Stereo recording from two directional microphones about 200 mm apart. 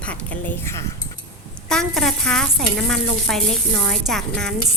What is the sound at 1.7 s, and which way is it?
Speech, centre (ahead or behind).